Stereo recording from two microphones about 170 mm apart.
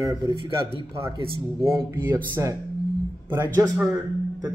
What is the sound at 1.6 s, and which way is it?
Speech, 15° right (ahead or behind).